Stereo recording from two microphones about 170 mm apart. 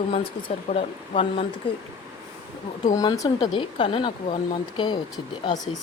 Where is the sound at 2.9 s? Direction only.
20° left (ahead or behind).